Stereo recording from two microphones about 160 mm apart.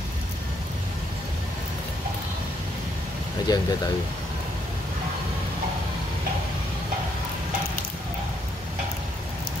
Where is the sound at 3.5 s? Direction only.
25° left (ahead or behind).